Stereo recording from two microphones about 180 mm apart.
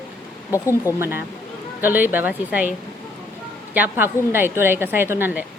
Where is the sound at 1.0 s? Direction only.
10° right (ahead or behind).